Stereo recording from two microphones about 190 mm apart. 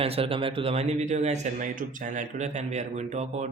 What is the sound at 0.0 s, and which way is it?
A man's voice, 30° right (ahead or behind).